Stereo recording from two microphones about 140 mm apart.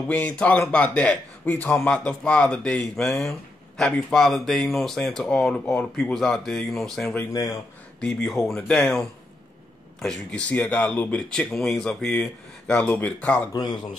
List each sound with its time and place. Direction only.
0.1 s speech: 10° left (ahead or behind)
7.2 s speech: 25° left (ahead or behind)
8.0 s speech: 5° left (ahead or behind)
13.5 s speech: 30° left (ahead or behind)